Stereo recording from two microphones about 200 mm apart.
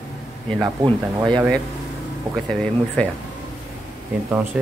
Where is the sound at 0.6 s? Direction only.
20° right (ahead or behind).